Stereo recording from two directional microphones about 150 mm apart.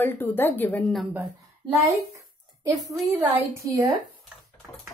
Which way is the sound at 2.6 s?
20° right (ahead or behind).